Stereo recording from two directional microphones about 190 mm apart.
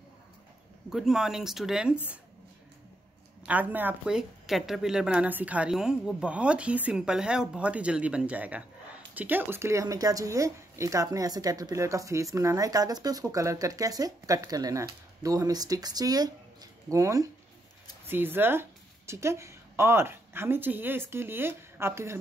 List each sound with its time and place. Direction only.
0.8 s speech: centre (ahead or behind)
3.4 s a woman's voice: 10° right (ahead or behind)